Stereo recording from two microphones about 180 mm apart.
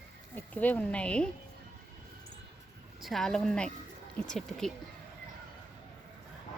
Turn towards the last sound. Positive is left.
turn(degrees=0)  # may be behind; listen again after turning